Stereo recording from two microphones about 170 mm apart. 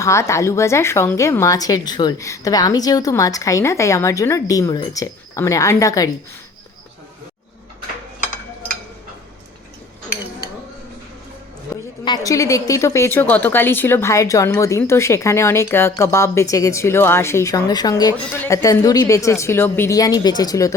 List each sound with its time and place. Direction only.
0.0 s speech: 15° left (ahead or behind)
11.7 s a woman's voice: 20° left (ahead or behind)